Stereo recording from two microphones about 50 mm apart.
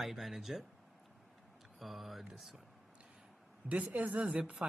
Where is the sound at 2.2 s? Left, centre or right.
Centre.